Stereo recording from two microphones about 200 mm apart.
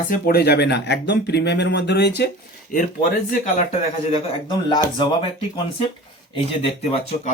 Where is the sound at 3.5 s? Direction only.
30° left (ahead or behind).